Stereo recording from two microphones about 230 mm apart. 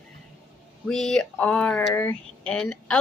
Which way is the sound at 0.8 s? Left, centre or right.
Centre.